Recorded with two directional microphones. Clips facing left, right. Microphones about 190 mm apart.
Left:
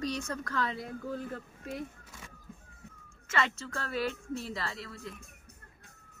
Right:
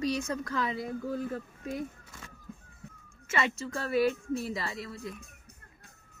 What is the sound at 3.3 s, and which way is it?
Speech, 15° right (ahead or behind).